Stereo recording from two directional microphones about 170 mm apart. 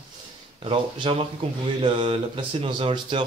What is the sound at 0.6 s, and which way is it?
Speech, 30° right (ahead or behind).